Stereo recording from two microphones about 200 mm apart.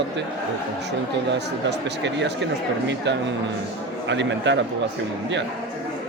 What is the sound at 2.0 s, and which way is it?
Speech, 60° right (ahead or behind).